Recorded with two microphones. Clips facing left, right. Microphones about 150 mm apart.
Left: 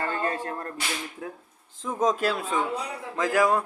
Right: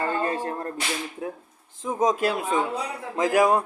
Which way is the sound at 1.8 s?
10° right (ahead or behind).